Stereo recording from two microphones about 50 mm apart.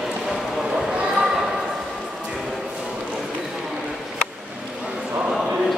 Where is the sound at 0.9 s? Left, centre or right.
Centre.